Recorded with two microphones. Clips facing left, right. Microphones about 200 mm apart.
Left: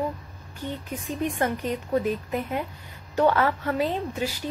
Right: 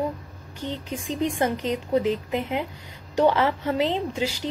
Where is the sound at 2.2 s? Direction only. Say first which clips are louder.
Right 2 dB; 20° right (ahead or behind).